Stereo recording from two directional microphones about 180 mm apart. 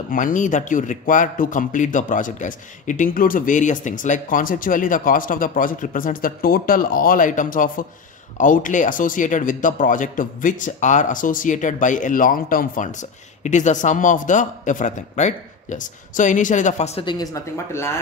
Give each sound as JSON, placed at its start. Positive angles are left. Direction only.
{"t": 0.1, "sound": "a man's voice", "side_deg": 45}
{"t": 17.0, "sound": "speech", "side_deg": 25}